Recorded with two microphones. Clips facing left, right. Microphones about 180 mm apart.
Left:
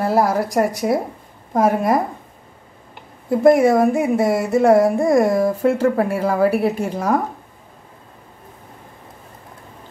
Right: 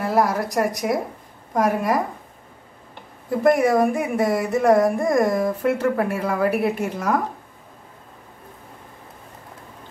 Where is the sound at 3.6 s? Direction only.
25° left (ahead or behind).